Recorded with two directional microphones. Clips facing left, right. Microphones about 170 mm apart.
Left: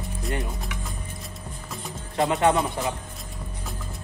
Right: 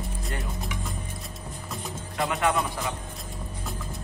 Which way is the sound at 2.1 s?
25° left (ahead or behind).